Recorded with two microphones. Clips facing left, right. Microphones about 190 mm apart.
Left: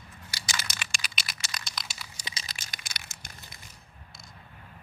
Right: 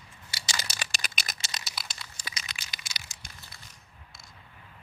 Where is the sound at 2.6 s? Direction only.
55° left (ahead or behind).